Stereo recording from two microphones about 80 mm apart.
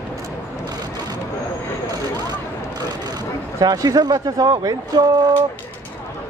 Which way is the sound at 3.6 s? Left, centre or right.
Right.